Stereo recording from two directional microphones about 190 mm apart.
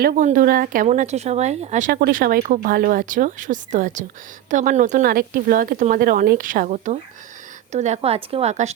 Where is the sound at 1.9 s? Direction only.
55° right (ahead or behind).